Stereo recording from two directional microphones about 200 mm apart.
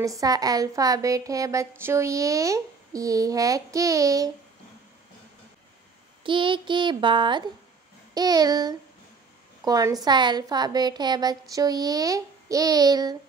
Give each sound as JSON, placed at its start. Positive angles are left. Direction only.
{"t": 0.0, "sound": "a woman's voice", "side_deg": -15}
{"t": 6.2, "sound": "a woman's voice", "side_deg": -25}